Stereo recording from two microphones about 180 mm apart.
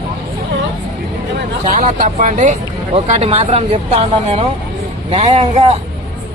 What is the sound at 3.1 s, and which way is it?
Speech, 35° right (ahead or behind).